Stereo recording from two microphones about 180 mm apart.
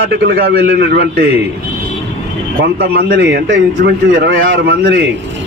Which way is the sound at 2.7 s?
60° right (ahead or behind).